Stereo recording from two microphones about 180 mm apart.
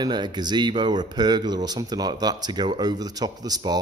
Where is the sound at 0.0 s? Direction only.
25° right (ahead or behind).